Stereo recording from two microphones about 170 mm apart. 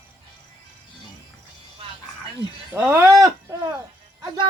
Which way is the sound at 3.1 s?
20° right (ahead or behind).